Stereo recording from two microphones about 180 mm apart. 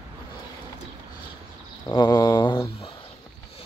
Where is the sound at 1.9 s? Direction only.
20° left (ahead or behind).